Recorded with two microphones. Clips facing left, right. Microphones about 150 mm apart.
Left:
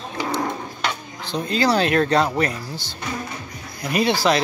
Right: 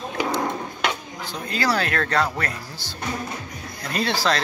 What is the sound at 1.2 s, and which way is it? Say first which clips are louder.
Speech: left 5 dB; 25° left (ahead or behind).